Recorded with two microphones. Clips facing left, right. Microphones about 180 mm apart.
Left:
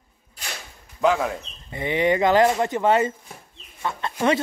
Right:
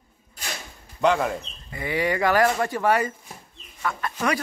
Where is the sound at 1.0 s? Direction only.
Centre (ahead or behind).